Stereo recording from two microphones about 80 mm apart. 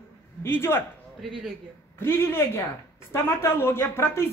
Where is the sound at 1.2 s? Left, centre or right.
Centre.